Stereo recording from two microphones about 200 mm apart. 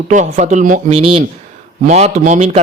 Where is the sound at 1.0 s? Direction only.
25° right (ahead or behind).